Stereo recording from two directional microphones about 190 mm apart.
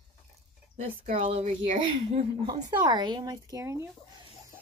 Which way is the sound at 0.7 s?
35° right (ahead or behind).